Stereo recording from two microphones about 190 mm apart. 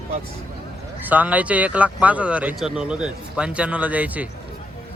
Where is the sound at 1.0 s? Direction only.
10° right (ahead or behind).